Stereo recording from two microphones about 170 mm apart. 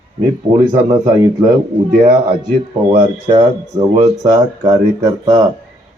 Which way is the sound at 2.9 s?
25° right (ahead or behind).